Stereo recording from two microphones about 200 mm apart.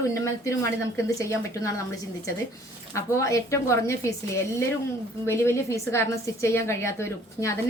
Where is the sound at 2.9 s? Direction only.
15° left (ahead or behind).